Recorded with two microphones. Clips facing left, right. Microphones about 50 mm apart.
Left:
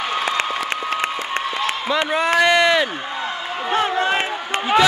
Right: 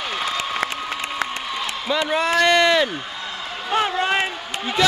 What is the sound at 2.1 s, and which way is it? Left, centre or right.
Speech, centre.